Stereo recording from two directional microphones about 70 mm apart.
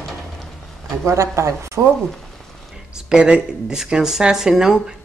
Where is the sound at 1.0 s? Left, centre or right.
Right.